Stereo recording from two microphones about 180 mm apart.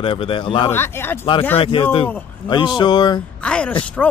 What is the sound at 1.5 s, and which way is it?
Speech, 30° left (ahead or behind).